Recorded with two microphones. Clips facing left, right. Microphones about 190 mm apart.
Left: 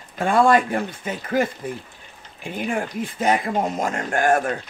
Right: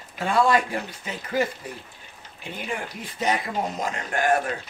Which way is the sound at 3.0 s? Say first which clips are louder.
Left 4 dB; 50° left (ahead or behind).